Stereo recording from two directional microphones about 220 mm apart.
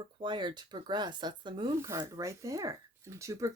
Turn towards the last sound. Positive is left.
turn(degrees=-15)  # may be behind; listen again after turning